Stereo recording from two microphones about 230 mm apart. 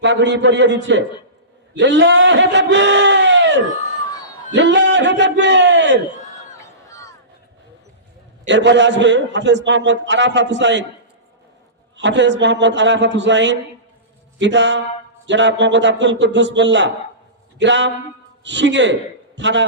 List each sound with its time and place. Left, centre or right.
0.0 s a man's voice: right
8.4 s a man's voice: right
11.9 s a man's voice: right